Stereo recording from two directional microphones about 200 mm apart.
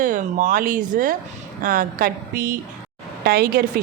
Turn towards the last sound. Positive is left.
turn(degrees=-50)  # may be behind; listen again after turning